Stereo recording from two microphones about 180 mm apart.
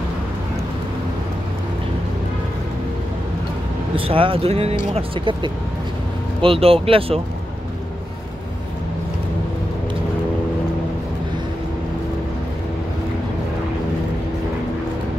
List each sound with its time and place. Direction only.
3.9 s speech: 30° right (ahead or behind)